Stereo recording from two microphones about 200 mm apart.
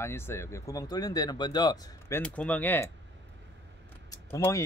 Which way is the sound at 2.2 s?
5° left (ahead or behind).